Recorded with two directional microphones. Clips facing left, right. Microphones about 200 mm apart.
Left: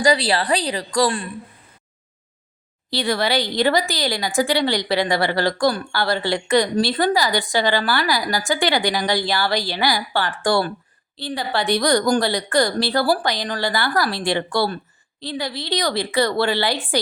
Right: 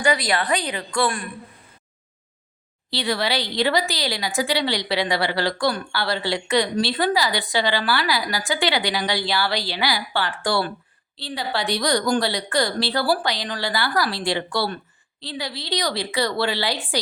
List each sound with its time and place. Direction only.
0.0 s a woman's voice: 35° left (ahead or behind)
2.9 s a woman's voice: 50° left (ahead or behind)